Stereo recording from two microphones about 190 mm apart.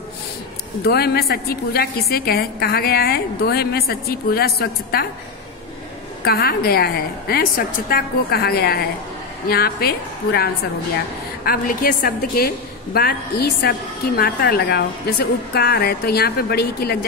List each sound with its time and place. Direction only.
0.8 s a woman's voice: 55° left (ahead or behind)
6.2 s a woman's voice: 55° left (ahead or behind)